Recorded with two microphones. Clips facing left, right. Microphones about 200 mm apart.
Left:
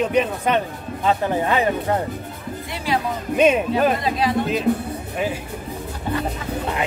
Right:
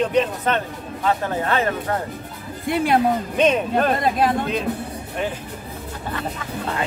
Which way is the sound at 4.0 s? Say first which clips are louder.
Right 2 dB; 50° right (ahead or behind).